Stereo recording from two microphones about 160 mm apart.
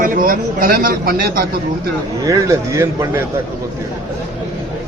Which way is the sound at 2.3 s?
20° right (ahead or behind).